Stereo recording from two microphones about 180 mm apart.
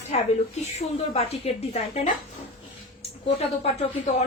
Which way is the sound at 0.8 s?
35° left (ahead or behind).